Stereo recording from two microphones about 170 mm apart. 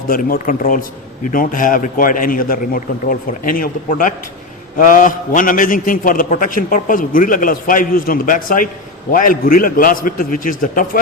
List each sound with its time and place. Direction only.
0.1 s a man's voice: 55° left (ahead or behind)